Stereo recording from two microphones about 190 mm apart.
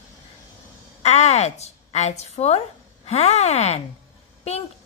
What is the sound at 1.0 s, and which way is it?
A woman's voice, 35° left (ahead or behind).